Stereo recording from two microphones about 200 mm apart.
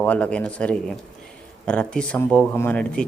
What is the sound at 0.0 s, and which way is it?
Speech, 5° left (ahead or behind).